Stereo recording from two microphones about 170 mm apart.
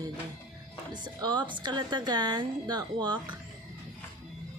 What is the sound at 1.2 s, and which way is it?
Speech, 25° right (ahead or behind).